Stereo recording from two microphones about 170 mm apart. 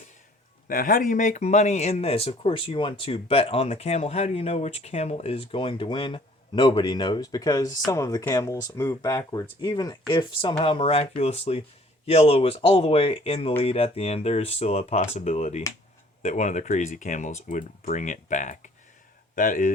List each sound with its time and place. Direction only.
0.7 s speech: 55° left (ahead or behind)